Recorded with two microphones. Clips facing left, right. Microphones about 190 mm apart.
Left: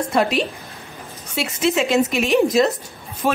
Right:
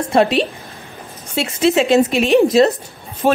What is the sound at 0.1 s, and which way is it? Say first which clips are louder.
A woman's voice: right 7 dB; 25° right (ahead or behind).